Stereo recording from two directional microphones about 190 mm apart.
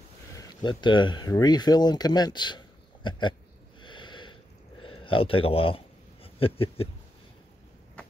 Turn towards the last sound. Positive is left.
turn(degrees=30)  # may be behind; listen again after turning